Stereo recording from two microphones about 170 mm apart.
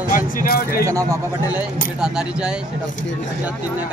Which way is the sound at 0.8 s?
20° right (ahead or behind).